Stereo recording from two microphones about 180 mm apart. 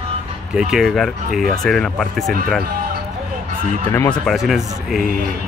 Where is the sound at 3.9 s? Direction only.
15° left (ahead or behind).